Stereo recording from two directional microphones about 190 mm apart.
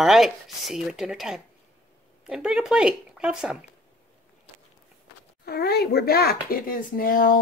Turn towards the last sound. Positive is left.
turn(degrees=50)  # may be behind; listen again after turning